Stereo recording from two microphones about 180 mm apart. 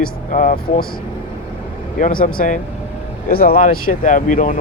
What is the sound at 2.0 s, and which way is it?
Speech, 45° left (ahead or behind).